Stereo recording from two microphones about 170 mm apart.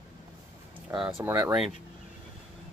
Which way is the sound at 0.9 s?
15° right (ahead or behind).